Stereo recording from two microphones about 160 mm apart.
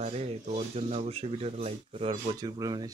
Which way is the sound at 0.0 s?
40° right (ahead or behind).